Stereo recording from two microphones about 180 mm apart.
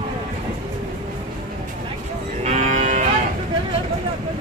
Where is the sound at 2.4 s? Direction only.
45° right (ahead or behind).